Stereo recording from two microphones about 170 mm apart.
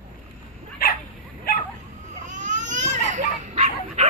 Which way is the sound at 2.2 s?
45° right (ahead or behind).